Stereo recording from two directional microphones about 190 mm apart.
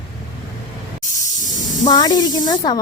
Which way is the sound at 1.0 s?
40° left (ahead or behind).